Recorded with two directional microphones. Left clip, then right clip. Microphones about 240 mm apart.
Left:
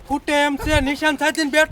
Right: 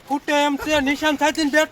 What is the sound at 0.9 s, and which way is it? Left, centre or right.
Speech, left.